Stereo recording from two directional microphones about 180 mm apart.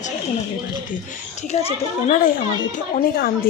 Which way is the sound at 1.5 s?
35° left (ahead or behind).